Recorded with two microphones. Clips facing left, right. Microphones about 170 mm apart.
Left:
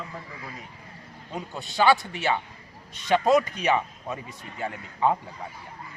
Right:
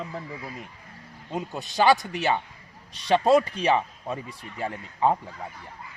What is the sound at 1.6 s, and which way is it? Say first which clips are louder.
A man's voice: even; 40° right (ahead or behind).